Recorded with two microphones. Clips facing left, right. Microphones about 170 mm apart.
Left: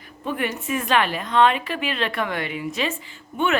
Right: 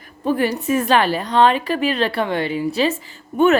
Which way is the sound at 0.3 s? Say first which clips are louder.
Right 7 dB; 35° right (ahead or behind).